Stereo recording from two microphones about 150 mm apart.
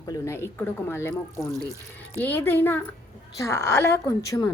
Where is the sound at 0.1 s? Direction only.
15° left (ahead or behind).